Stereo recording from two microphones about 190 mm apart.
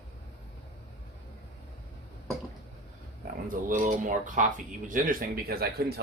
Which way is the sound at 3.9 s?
40° right (ahead or behind).